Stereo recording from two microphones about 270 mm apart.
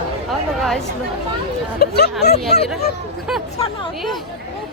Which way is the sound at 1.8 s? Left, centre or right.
Left.